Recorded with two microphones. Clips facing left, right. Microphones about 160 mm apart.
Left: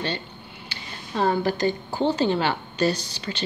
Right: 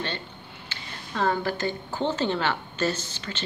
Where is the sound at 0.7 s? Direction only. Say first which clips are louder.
Left 2 dB; 15° left (ahead or behind).